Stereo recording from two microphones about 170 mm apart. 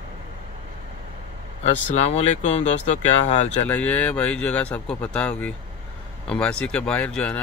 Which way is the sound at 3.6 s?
10° left (ahead or behind).